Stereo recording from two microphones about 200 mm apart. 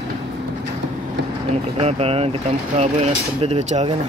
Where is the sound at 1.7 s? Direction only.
30° right (ahead or behind).